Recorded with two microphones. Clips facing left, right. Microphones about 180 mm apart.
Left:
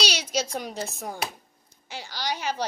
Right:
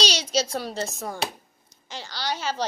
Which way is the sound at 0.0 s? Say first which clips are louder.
Right 3 dB; 10° left (ahead or behind).